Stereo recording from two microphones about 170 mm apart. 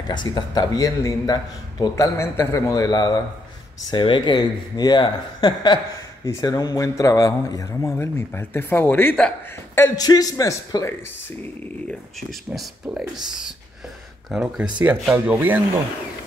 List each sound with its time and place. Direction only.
0.1 s speech: 25° left (ahead or behind); by 9.3 s 10° left (ahead or behind)
9.8 s speech: 20° left (ahead or behind)
11.9 s speech: centre (ahead or behind)
14.3 s speech: 5° right (ahead or behind)